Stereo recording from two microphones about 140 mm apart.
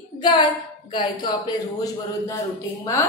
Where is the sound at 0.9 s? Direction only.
30° left (ahead or behind).